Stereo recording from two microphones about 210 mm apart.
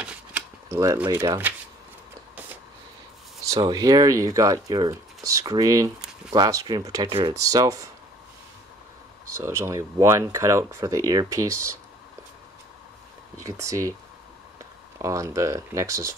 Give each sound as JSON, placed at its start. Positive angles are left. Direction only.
{"t": 0.0, "sound": "a sound", "side_deg": -5}
{"t": 3.5, "sound": "speech", "side_deg": -20}
{"t": 9.4, "sound": "speech", "side_deg": -15}
{"t": 11.4, "sound": "speech", "side_deg": -90}
{"t": 13.4, "sound": "speech", "side_deg": -15}
{"t": 15.0, "sound": "speech", "side_deg": -15}